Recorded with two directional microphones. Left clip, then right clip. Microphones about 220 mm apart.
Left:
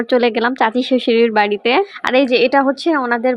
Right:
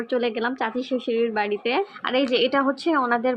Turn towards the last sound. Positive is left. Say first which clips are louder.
# left 6 dB
turn(degrees=25)  # may be behind; listen again after turning